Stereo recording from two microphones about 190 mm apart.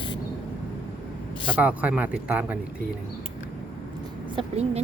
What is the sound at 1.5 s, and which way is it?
Speech, 10° right (ahead or behind).